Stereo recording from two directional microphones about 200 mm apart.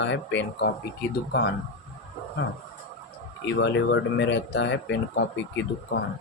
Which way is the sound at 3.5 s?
60° left (ahead or behind).